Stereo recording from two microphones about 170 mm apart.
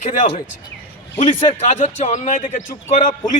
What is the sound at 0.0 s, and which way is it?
A man's voice, 45° left (ahead or behind).